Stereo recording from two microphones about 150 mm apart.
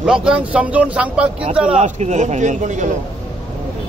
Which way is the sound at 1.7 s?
50° right (ahead or behind).